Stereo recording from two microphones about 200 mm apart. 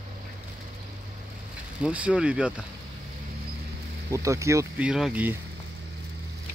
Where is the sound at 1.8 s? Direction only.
5° right (ahead or behind).